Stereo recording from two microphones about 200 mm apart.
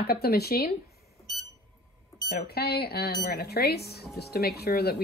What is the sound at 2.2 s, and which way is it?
Speech, 50° left (ahead or behind).